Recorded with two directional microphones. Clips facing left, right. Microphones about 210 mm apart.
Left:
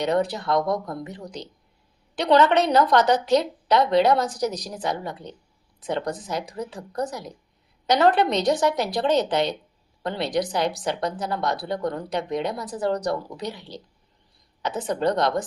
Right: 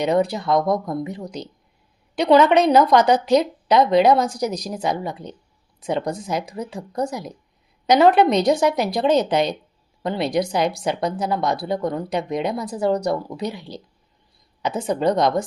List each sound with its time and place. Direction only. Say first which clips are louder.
0.0 s speech: right 3 dB; 10° right (ahead or behind)
14.8 s speech: right 3 dB; 10° right (ahead or behind)